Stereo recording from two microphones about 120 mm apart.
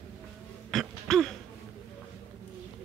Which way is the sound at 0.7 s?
Centre (ahead or behind).